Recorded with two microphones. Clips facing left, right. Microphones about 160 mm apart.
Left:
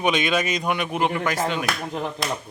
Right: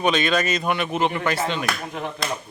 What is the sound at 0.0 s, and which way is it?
A man's voice, 10° left (ahead or behind).